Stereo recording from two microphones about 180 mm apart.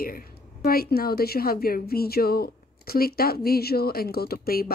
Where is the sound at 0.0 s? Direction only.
50° left (ahead or behind).